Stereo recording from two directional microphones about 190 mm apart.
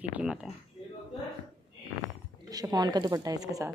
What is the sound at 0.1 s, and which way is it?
Speech, 5° right (ahead or behind).